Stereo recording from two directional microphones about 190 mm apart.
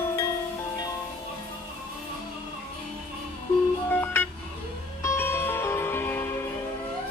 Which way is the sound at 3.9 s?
10° left (ahead or behind).